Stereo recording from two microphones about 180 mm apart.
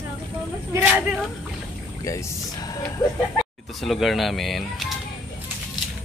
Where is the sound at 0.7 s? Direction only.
10° right (ahead or behind).